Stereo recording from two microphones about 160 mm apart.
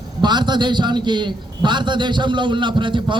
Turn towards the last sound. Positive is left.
turn(degrees=-30)  # may be behind; listen again after turning